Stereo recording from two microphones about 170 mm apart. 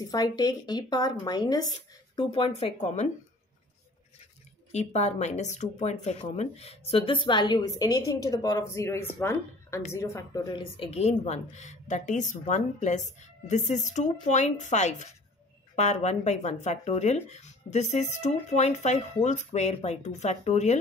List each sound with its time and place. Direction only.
0.1 s a woman's voice: 20° left (ahead or behind); by 3.1 s 45° left (ahead or behind)
4.7 s a woman's voice: 40° left (ahead or behind); by 10.6 s 20° left (ahead or behind)
10.8 s a woman's voice: 35° left (ahead or behind)